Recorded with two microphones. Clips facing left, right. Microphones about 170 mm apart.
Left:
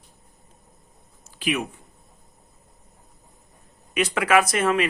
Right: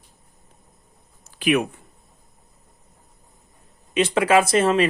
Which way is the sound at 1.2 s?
60° right (ahead or behind).